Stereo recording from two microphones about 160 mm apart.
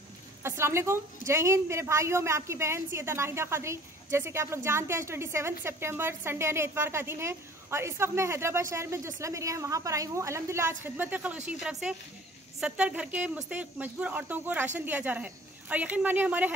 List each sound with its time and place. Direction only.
0.4 s a woman's voice: 15° right (ahead or behind)